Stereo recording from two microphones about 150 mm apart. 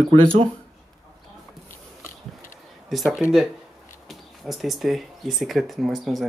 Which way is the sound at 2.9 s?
Centre (ahead or behind).